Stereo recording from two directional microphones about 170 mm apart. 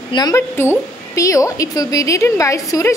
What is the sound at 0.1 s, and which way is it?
A woman's voice, 20° left (ahead or behind).